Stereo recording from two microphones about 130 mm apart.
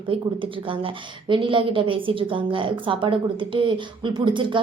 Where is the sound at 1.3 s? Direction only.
40° right (ahead or behind).